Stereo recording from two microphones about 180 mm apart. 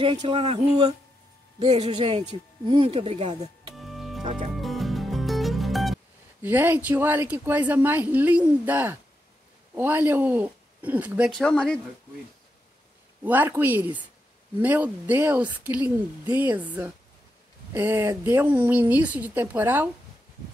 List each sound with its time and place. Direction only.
0.0 s speech: 25° right (ahead or behind)
3.7 s music: centre (ahead or behind)
6.4 s speech: 10° right (ahead or behind); by 11.8 s 5° left (ahead or behind)
13.2 s speech: 10° right (ahead or behind)